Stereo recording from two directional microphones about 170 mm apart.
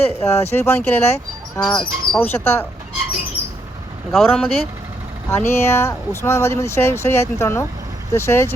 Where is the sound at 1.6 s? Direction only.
25° left (ahead or behind).